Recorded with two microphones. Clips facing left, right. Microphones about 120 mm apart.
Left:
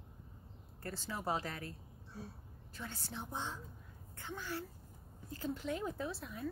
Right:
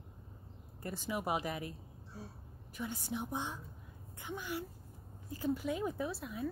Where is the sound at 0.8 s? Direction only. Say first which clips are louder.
Right 3 dB; 15° right (ahead or behind).